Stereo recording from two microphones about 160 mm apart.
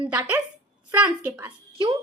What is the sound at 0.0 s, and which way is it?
A woman's voice, 5° right (ahead or behind).